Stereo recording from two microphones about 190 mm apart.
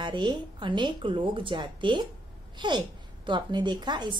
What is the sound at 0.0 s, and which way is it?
A woman's voice, 25° right (ahead or behind).